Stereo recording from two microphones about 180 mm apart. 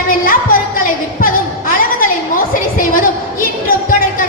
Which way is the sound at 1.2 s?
50° left (ahead or behind).